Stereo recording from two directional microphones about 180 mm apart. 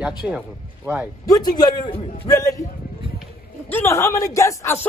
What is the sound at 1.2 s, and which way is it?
A man's voice, 20° left (ahead or behind).